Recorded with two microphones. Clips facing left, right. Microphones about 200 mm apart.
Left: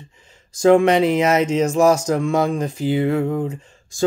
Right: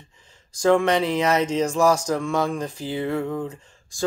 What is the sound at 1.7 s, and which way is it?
Speech, 25° left (ahead or behind).